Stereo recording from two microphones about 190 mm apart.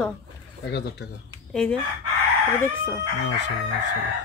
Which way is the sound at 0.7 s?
60° left (ahead or behind).